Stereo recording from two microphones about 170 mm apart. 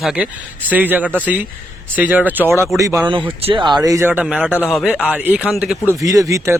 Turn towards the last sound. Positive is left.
turn(degrees=-20)  # may be behind; listen again after turning